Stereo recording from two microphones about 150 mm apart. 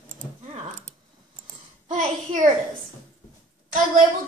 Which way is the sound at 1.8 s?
55° right (ahead or behind).